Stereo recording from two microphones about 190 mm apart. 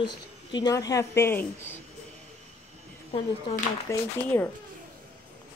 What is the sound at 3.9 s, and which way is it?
Speech, 10° left (ahead or behind).